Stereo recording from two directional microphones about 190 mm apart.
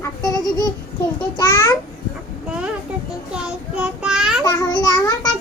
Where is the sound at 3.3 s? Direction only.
5° right (ahead or behind).